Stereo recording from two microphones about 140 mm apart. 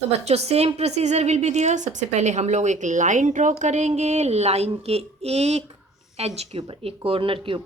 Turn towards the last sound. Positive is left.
turn(degrees=-40)  # may be behind; listen again after turning